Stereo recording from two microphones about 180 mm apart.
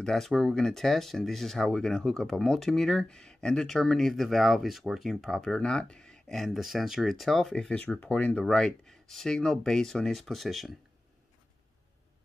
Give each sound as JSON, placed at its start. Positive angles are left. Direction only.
{"t": 0.0, "sound": "speech", "side_deg": 0}